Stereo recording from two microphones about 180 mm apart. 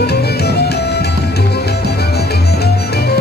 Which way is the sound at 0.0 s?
65° left (ahead or behind).